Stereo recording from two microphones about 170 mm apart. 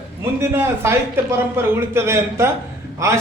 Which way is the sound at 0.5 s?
15° right (ahead or behind).